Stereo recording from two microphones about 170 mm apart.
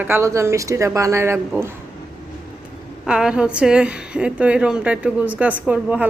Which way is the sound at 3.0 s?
5° right (ahead or behind).